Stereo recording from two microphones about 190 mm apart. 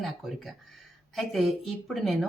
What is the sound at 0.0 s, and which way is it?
A woman's voice, centre (ahead or behind).